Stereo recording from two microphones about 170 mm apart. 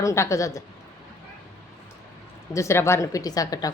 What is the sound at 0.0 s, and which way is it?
Speech, 20° left (ahead or behind).